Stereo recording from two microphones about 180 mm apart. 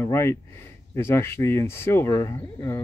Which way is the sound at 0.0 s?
15° left (ahead or behind).